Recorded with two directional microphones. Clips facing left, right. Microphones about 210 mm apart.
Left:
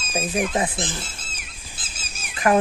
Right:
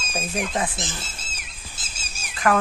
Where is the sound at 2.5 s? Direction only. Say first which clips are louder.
Left 3 dB; 20° left (ahead or behind).